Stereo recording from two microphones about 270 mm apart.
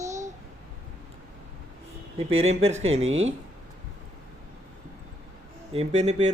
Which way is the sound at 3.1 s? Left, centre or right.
Right.